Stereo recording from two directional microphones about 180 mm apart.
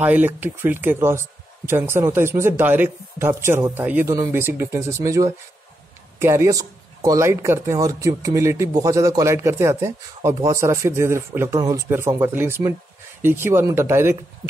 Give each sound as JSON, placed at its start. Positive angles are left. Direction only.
{"t": 0.0, "sound": "speech", "side_deg": -10}